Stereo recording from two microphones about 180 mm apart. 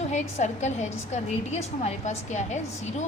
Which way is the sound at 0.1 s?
40° left (ahead or behind).